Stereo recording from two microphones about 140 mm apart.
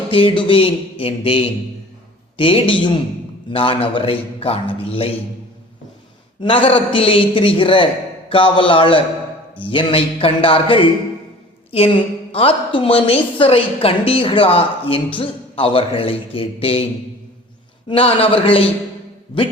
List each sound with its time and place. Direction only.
0.1 s a woman's voice: 40° left (ahead or behind)
6.4 s a woman's voice: 40° left (ahead or behind)
17.8 s a woman's voice: 40° left (ahead or behind)